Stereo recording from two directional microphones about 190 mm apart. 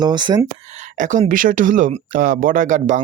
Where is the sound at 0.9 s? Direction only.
40° right (ahead or behind).